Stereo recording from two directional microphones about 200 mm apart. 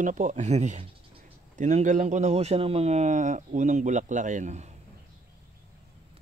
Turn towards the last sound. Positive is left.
turn(degrees=-35)  # may be behind; listen again after turning